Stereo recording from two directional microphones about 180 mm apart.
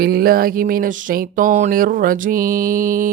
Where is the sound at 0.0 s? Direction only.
60° right (ahead or behind).